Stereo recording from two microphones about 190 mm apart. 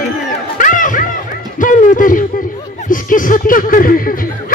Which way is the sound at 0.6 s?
45° left (ahead or behind).